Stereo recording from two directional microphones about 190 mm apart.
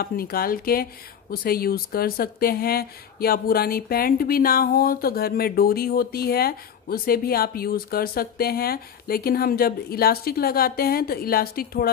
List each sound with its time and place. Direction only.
0.0 s speech: 50° left (ahead or behind)